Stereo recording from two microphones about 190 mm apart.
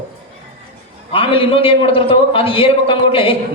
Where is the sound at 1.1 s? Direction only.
30° left (ahead or behind).